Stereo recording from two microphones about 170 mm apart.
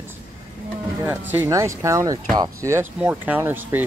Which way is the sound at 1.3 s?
15° right (ahead or behind).